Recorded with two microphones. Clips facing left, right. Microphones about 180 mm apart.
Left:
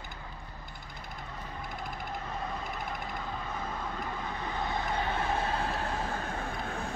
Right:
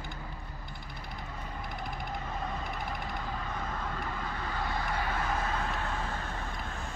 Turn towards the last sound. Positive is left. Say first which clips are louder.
# left 2 dB
turn(degrees=40)  # may be behind; listen again after turning